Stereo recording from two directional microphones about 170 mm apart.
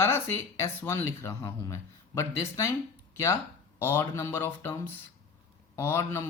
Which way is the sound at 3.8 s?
15° left (ahead or behind).